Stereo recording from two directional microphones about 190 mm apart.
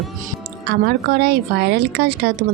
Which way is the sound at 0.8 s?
55° right (ahead or behind).